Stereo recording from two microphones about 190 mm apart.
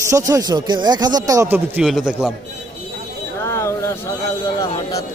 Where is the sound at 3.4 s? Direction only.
15° left (ahead or behind).